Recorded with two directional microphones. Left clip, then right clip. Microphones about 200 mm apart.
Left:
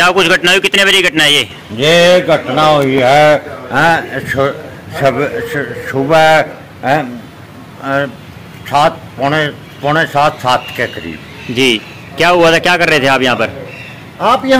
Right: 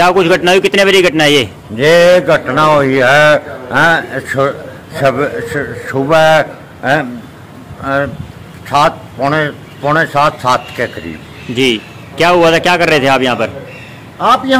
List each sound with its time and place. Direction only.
0.0 s a man's voice: centre (ahead or behind)
14.2 s a man's voice: 40° left (ahead or behind)